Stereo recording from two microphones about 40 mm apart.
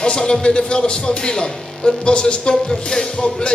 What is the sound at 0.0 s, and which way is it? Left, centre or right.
A man's voice, left.